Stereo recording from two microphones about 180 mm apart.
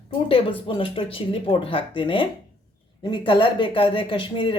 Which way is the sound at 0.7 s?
30° left (ahead or behind).